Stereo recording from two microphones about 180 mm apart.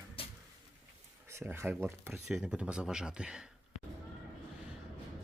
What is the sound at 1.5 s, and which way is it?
Speech, 15° right (ahead or behind).